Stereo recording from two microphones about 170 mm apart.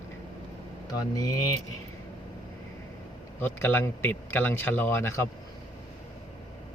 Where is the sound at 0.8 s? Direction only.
20° left (ahead or behind).